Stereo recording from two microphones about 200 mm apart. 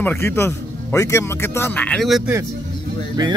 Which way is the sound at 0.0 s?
10° left (ahead or behind).